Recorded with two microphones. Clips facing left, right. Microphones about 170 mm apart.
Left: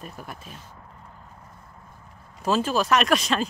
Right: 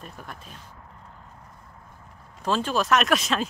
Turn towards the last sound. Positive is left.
turn(degrees=0)  # may be behind; listen again after turning